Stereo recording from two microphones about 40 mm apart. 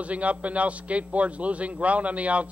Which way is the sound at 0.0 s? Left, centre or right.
Right.